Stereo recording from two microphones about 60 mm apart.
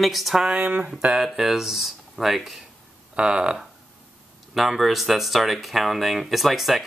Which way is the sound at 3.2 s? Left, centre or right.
Centre.